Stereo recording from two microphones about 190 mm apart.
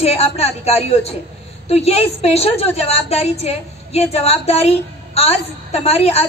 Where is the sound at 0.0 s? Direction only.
35° left (ahead or behind).